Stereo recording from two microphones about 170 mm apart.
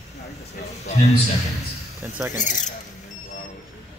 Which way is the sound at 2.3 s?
45° left (ahead or behind).